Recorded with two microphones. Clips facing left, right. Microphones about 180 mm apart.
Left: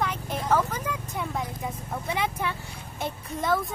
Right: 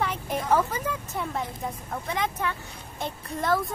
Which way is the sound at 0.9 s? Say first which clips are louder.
Even; centre (ahead or behind).